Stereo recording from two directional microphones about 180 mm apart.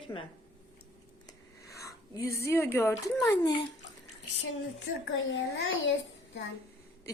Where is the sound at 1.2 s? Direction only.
15° left (ahead or behind).